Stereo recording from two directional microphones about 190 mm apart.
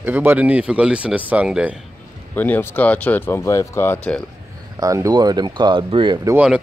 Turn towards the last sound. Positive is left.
turn(degrees=-20)  # may be behind; listen again after turning